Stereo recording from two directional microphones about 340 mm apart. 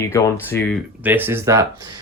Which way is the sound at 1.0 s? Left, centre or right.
Centre.